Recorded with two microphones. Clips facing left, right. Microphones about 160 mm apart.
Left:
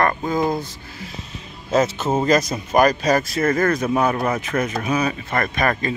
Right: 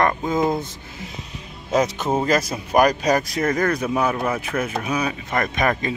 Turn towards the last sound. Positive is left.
turn(degrees=-15)  # may be behind; listen again after turning